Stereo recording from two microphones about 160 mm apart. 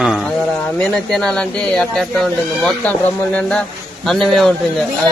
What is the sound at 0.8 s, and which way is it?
Speech, 5° left (ahead or behind).